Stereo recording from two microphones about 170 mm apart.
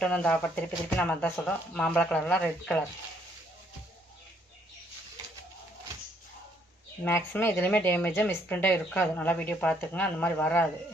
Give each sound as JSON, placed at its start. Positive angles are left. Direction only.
{"t": 0.0, "sound": "speech", "side_deg": 5}
{"t": 7.1, "sound": "speech", "side_deg": 10}